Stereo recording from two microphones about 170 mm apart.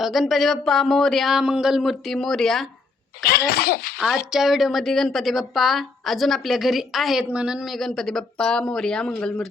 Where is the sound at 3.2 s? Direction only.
65° left (ahead or behind).